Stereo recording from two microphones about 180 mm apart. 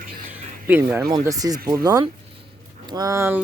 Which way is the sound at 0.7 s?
15° right (ahead or behind).